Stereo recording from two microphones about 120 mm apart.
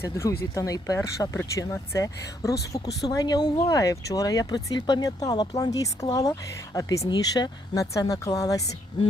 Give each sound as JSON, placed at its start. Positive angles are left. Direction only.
{"t": 0.0, "sound": "speech", "side_deg": 25}